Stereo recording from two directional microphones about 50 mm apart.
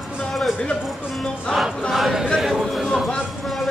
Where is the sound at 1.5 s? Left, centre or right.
Centre.